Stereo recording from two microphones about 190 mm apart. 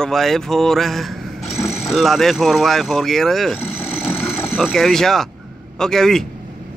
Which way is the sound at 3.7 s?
10° left (ahead or behind).